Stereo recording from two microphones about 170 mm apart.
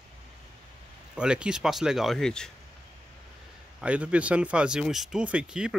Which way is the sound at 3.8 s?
5° right (ahead or behind).